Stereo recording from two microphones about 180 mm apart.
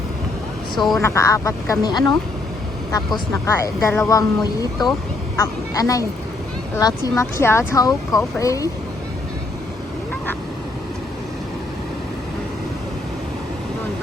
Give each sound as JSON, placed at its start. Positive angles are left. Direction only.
{"t": 0.8, "sound": "speech", "side_deg": 0}
{"t": 1.0, "sound": "speech", "side_deg": 15}
{"t": 3.4, "sound": "speech", "side_deg": 15}
{"t": 5.4, "sound": "a woman's voice", "side_deg": 20}